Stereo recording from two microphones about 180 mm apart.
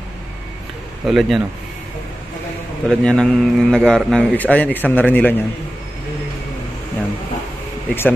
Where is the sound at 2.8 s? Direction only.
5° left (ahead or behind).